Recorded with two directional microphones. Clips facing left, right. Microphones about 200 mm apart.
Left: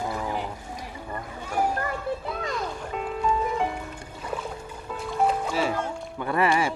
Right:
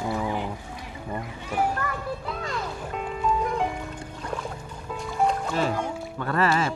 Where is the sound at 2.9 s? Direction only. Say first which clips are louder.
Even; centre (ahead or behind).